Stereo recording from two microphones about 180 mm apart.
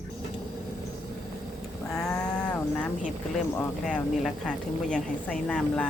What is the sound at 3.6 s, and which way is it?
Speech, 5° left (ahead or behind).